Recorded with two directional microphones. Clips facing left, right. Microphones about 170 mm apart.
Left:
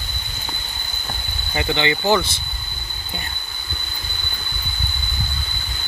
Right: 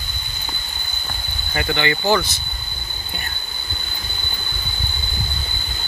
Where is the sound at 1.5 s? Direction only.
20° left (ahead or behind).